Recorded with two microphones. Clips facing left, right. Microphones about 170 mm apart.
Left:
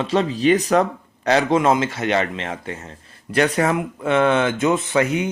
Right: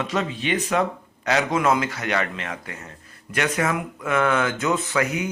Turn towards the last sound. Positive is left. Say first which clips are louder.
# left 5 dB
turn(degrees=25)  # may be behind; listen again after turning